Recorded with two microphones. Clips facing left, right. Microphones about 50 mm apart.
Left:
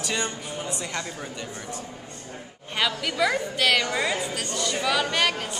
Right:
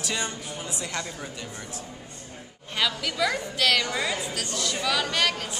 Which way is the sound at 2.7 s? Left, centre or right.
Centre.